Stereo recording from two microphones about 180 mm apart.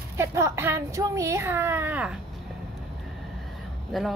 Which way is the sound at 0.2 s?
15° right (ahead or behind).